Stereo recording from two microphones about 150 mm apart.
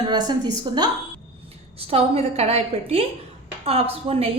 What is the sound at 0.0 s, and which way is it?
Speech, 25° right (ahead or behind).